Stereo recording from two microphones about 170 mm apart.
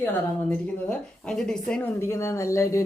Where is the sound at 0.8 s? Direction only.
5° left (ahead or behind).